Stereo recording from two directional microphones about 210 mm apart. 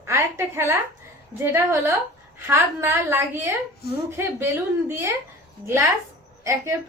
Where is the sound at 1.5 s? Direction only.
10° right (ahead or behind).